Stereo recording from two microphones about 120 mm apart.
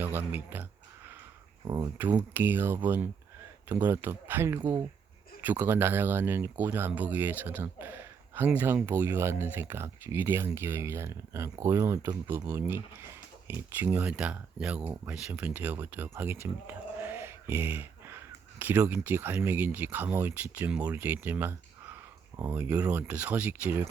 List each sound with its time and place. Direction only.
0.0 s a sound: 15° right (ahead or behind)
1.6 s speech: 30° right (ahead or behind)
2.0 s speech: 15° right (ahead or behind)